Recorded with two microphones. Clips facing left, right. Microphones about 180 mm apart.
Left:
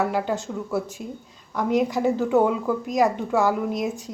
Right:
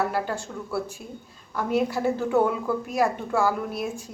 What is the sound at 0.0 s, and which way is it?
Speech, 15° left (ahead or behind).